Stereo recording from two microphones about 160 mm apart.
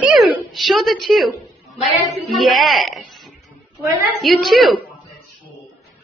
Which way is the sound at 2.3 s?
Centre (ahead or behind).